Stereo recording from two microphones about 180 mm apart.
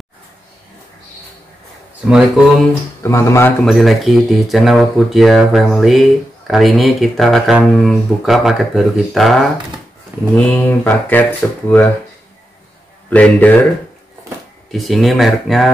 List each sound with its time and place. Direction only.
2.0 s speech: 5° right (ahead or behind)
3.0 s speech: 15° left (ahead or behind)
3.6 s speech: centre (ahead or behind)
13.1 s speech: 10° left (ahead or behind)
14.7 s speech: centre (ahead or behind)